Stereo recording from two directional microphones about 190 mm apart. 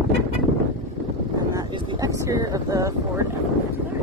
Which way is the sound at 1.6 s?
25° right (ahead or behind).